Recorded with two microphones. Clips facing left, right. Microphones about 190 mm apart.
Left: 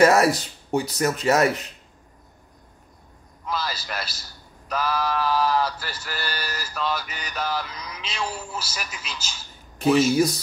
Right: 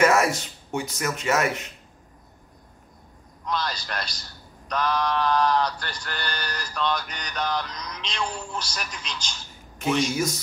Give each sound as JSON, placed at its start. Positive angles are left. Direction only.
{"t": 0.0, "sound": "speech", "side_deg": 35}
{"t": 3.4, "sound": "a man's voice", "side_deg": 5}
{"t": 10.1, "sound": "speech", "side_deg": 35}